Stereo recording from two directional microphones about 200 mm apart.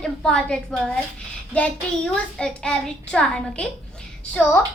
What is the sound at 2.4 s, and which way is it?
A woman's voice, 5° left (ahead or behind).